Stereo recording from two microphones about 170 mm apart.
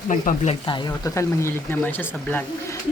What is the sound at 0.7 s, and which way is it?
Speech, 20° left (ahead or behind).